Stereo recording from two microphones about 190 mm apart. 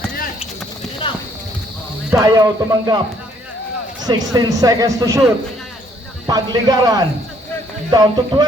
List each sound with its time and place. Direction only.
1.0 s clip-clop: 25° left (ahead or behind)
2.1 s speech: 20° right (ahead or behind)
4.0 s speech: 20° right (ahead or behind)
6.2 s speech: 20° right (ahead or behind)